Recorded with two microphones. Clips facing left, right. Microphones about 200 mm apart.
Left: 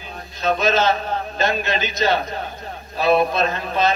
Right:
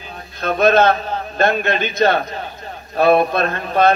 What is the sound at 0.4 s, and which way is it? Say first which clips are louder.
A man's voice: right 5 dB; 55° right (ahead or behind).